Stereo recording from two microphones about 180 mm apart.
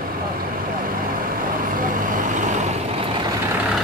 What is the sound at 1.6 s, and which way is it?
Vehicle, 50° right (ahead or behind).